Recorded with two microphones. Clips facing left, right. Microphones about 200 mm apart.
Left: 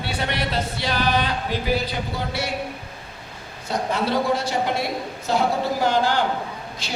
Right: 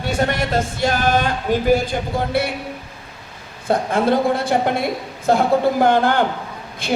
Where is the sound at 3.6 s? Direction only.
50° right (ahead or behind).